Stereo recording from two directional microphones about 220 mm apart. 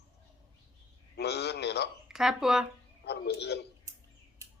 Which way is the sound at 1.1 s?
50° left (ahead or behind).